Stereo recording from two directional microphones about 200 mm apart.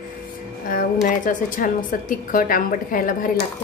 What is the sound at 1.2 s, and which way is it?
A woman's voice, 40° left (ahead or behind).